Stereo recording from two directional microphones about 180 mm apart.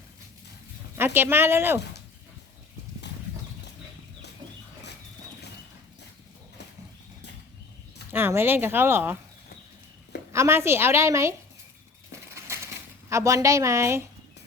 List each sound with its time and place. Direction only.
0.9 s speech: 10° right (ahead or behind)
3.1 s clip-clop: 70° left (ahead or behind)
8.1 s speech: 10° right (ahead or behind)
10.3 s speech: 15° right (ahead or behind)
13.1 s speech: 15° right (ahead or behind)